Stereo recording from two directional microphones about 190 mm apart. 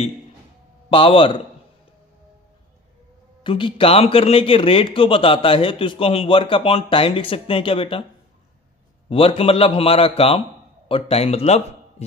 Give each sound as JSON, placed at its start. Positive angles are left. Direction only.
{"t": 0.8, "sound": "a man's voice", "side_deg": 25}
{"t": 3.4, "sound": "a man's voice", "side_deg": 25}
{"t": 9.1, "sound": "a man's voice", "side_deg": 30}